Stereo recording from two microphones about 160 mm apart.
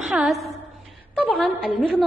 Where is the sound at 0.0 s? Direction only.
5° right (ahead or behind).